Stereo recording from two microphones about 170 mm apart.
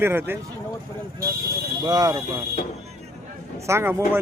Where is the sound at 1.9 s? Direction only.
20° right (ahead or behind).